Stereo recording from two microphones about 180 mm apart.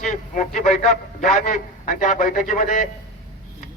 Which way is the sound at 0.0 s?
45° left (ahead or behind).